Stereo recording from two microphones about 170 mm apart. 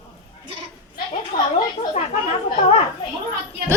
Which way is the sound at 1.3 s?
55° left (ahead or behind).